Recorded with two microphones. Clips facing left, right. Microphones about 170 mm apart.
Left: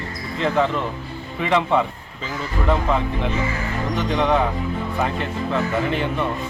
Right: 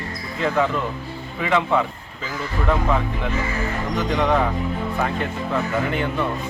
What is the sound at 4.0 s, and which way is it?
Speech, centre (ahead or behind).